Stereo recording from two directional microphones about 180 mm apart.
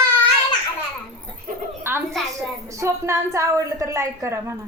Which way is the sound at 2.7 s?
15° right (ahead or behind).